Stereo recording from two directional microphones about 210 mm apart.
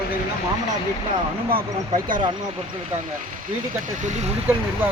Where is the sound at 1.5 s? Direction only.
40° right (ahead or behind).